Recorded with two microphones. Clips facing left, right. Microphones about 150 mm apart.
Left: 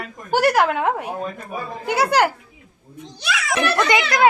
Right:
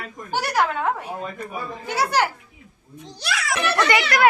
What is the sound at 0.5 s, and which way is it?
Speech, 70° left (ahead or behind).